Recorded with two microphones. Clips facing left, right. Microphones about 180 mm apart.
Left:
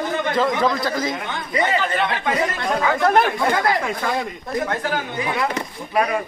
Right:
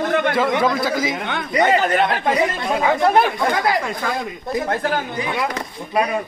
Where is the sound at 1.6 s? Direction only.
45° right (ahead or behind).